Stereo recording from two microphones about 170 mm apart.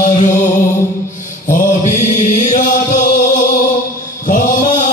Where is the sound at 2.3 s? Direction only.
45° left (ahead or behind).